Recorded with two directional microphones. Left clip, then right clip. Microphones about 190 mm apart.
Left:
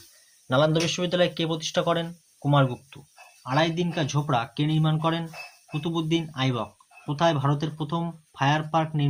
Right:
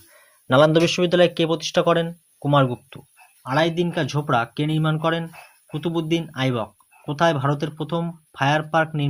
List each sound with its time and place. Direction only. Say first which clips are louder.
0.4 s speech: right 7 dB; 40° right (ahead or behind)